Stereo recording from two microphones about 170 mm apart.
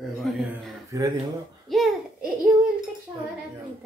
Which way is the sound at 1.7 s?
Centre (ahead or behind).